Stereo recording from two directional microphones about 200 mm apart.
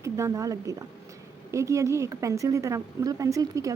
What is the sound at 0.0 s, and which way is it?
A woman's voice, 15° right (ahead or behind).